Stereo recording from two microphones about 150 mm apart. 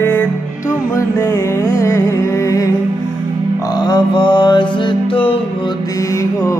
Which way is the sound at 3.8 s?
30° left (ahead or behind).